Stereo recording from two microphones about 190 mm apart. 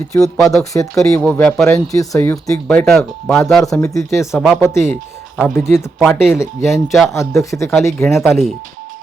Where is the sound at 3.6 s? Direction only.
15° left (ahead or behind).